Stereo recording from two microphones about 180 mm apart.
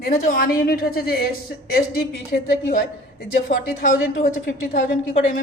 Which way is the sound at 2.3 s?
55° left (ahead or behind).